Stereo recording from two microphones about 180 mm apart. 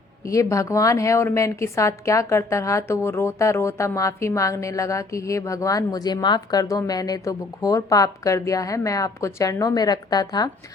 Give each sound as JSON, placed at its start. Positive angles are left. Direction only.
{"t": 0.3, "sound": "a woman's voice", "side_deg": 15}